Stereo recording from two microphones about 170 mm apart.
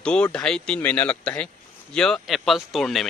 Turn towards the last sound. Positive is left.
turn(degrees=0)  # may be behind; listen again after turning